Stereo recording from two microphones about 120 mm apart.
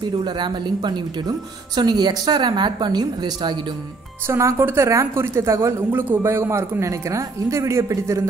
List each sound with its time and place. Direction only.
0.0 s speech: 40° right (ahead or behind)
4.3 s a woman's voice: 25° right (ahead or behind)